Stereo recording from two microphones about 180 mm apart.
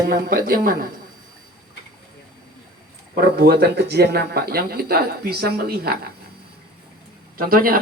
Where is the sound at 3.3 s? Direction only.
60° right (ahead or behind).